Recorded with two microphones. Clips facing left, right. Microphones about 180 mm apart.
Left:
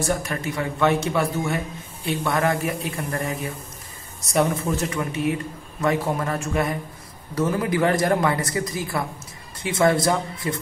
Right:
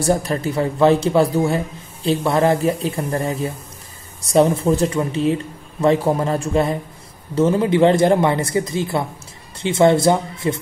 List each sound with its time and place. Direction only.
0.0 s speech: 35° right (ahead or behind)